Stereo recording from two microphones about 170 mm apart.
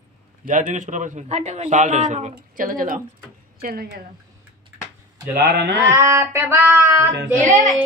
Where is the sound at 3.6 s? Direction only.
65° right (ahead or behind).